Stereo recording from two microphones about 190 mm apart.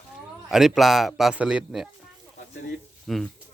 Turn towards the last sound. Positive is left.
turn(degrees=0)  # may be behind; listen again after turning